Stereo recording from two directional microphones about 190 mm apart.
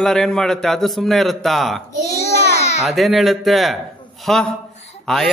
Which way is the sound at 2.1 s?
35° left (ahead or behind).